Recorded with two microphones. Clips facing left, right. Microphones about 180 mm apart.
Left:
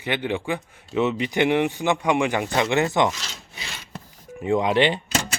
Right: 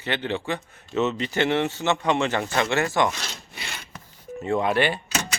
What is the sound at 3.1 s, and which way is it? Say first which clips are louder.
Wood: right 2 dB; 60° right (ahead or behind).